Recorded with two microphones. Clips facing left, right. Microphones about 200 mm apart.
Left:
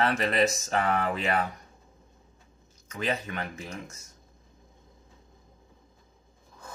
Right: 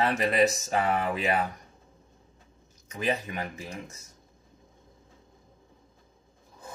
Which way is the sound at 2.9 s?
15° right (ahead or behind).